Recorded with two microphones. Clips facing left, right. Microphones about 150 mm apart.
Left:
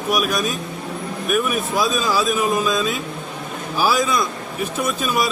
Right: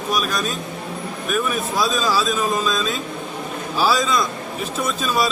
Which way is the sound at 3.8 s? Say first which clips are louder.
Even; 15° left (ahead or behind).